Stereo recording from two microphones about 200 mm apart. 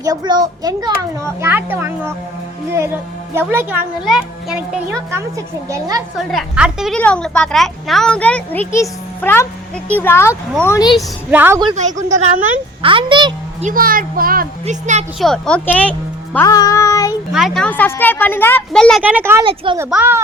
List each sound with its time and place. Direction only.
0.0 s a child's voice: 20° right (ahead or behind)
3.3 s a child's voice: 10° right (ahead or behind)
5.6 s a child's voice: 15° right (ahead or behind)
6.1 s a woman's voice: centre (ahead or behind); by 10.9 s 15° left (ahead or behind)
10.9 s a child's voice: 10° right (ahead or behind)
11.7 s a woman's voice: 35° right (ahead or behind)
12.8 s a woman's voice: 25° right (ahead or behind)
13.7 s speech: 45° right (ahead or behind)
15.2 s speech: 5° left (ahead or behind)
16.5 s child singing: 20° left (ahead or behind)
17.3 s speech: centre (ahead or behind)
19.0 s a child's voice: 10° right (ahead or behind)
19.5 s a child's voice: 25° right (ahead or behind)
19.8 s a child's voice: 10° right (ahead or behind)